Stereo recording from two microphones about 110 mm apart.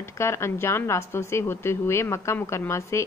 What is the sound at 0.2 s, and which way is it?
A woman's voice, 25° left (ahead or behind).